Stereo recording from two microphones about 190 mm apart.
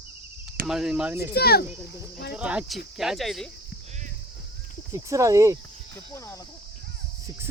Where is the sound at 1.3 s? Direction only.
55° left (ahead or behind).